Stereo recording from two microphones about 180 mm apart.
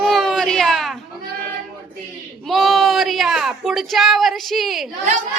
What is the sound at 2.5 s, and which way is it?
Female singing, centre (ahead or behind).